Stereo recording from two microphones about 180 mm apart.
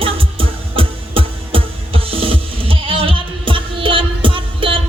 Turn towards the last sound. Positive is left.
turn(degrees=-30)  # may be behind; listen again after turning